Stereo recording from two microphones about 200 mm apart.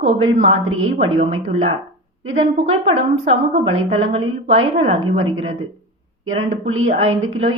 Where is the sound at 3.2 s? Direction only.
30° right (ahead or behind).